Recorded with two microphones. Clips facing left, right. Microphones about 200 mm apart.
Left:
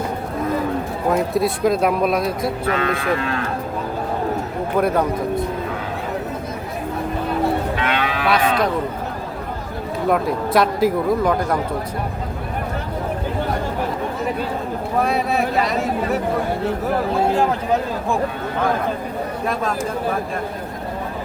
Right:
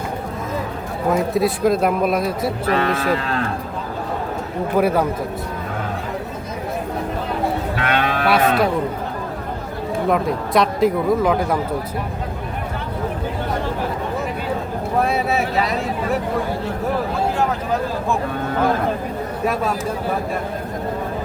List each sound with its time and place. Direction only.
1.1 s speech: centre (ahead or behind)
2.6 s speech: 35° right (ahead or behind)
4.7 s speech: 10° right (ahead or behind)
7.8 s moo: 50° right (ahead or behind)
10.1 s speech: centre (ahead or behind)
15.0 s speech: centre (ahead or behind)